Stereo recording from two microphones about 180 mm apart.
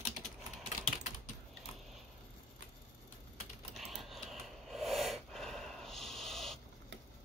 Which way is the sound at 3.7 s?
Centre (ahead or behind).